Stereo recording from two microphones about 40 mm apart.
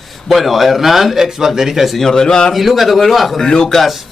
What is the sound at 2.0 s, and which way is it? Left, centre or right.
Speech, centre.